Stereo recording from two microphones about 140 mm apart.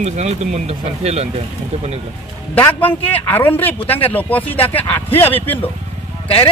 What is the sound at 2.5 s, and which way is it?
A man's voice, 10° left (ahead or behind).